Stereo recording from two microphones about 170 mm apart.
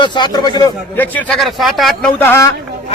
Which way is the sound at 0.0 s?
25° left (ahead or behind).